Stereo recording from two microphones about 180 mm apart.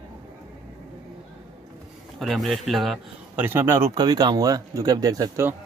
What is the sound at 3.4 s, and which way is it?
Speech, 10° right (ahead or behind).